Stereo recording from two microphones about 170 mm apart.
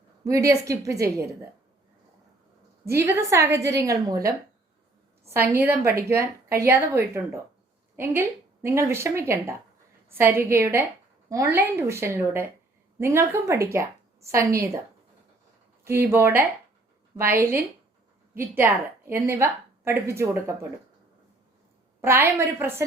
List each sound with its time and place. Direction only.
0.3 s speech: 20° right (ahead or behind)
2.8 s a woman's voice: 15° right (ahead or behind)
5.3 s a woman's voice: 15° right (ahead or behind)
15.8 s a woman's voice: 15° right (ahead or behind)
22.0 s a woman's voice: 15° right (ahead or behind)